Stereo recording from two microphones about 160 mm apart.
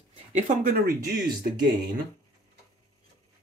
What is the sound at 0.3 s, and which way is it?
Speech, 50° right (ahead or behind).